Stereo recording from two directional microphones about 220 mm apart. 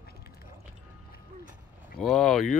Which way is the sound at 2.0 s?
Centre (ahead or behind).